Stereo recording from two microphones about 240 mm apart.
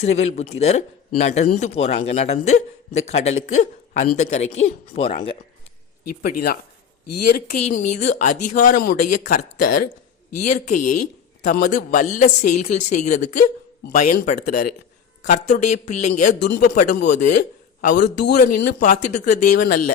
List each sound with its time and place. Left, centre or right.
0.0 s a man's voice: left
7.2 s a man's voice: left
16.4 s a man's voice: left
18.3 s a man's voice: left
18.6 s a man's voice: left